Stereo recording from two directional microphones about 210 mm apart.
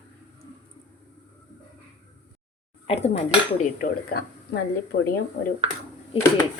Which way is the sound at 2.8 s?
30° left (ahead or behind).